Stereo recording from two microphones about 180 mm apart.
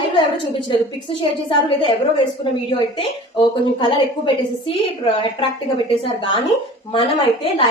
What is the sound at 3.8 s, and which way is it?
Speech, 25° left (ahead or behind).